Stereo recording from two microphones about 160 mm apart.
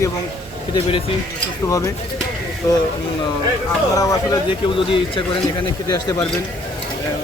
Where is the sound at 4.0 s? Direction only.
20° left (ahead or behind).